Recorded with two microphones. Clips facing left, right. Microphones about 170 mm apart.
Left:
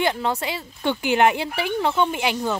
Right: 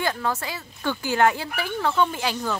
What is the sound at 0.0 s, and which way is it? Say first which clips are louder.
A woman's voice: left 3 dB; 20° left (ahead or behind).